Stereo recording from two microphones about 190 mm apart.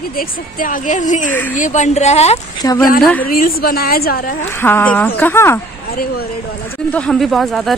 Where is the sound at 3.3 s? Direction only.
50° left (ahead or behind).